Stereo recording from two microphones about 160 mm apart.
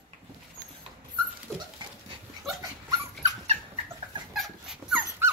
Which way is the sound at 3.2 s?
45° right (ahead or behind).